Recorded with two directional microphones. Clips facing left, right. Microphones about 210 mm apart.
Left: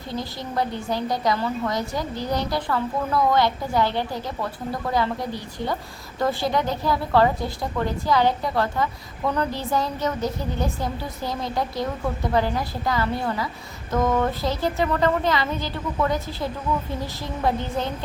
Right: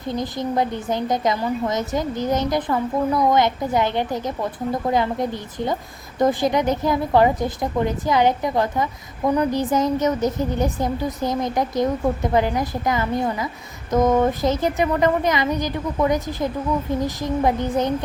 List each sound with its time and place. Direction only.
0.1 s a woman's voice: 20° right (ahead or behind)